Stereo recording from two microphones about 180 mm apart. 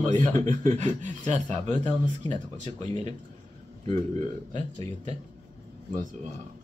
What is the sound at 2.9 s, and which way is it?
Speech, 25° left (ahead or behind).